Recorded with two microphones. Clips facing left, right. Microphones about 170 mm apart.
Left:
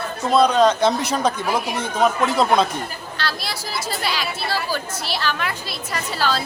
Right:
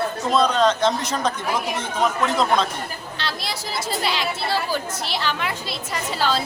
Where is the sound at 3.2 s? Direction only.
20° right (ahead or behind).